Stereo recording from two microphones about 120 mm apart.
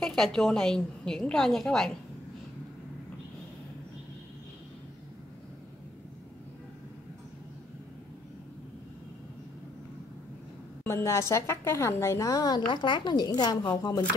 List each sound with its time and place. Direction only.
0.0 s a woman's voice: 5° left (ahead or behind)
10.8 s a woman's voice: 20° left (ahead or behind)